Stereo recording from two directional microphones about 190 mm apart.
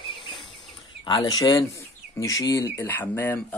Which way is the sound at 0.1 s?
25° left (ahead or behind).